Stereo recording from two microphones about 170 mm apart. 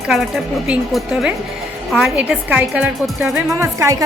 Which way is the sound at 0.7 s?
5° right (ahead or behind).